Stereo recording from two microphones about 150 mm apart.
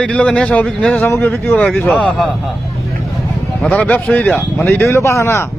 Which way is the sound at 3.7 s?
10° left (ahead or behind).